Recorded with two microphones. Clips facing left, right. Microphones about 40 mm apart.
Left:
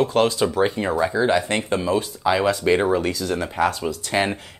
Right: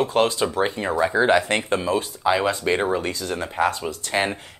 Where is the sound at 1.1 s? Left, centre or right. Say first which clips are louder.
Right 5 dB; right; by 2.3 s centre.